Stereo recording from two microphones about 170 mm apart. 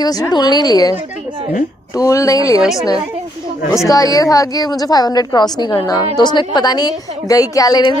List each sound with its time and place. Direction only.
0.0 s speech: 25° left (ahead or behind)
2.0 s speech: 20° left (ahead or behind)
2.6 s a woman's voice: centre (ahead or behind)
3.7 s speech: 20° left (ahead or behind)